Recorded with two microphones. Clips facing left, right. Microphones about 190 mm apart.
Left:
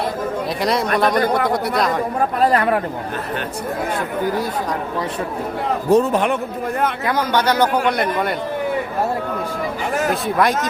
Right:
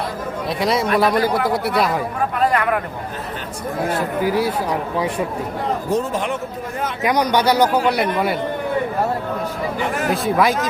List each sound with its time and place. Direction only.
0.6 s speech: centre (ahead or behind)
2.4 s speech: 35° left (ahead or behind)
4.2 s a man's voice: 10° right (ahead or behind)
5.9 s speech: 65° left (ahead or behind)
7.0 s a man's voice: 15° right (ahead or behind)
10.1 s speech: centre (ahead or behind)